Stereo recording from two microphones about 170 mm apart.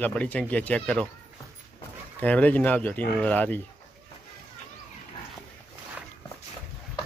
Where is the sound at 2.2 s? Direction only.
10° left (ahead or behind).